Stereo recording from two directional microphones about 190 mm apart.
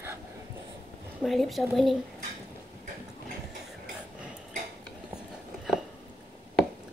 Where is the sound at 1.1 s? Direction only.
Centre (ahead or behind).